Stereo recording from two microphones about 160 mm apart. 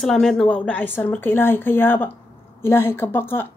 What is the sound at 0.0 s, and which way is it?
Speech, centre (ahead or behind).